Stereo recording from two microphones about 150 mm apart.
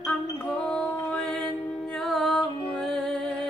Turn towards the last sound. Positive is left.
turn(degrees=5)  # may be behind; listen again after turning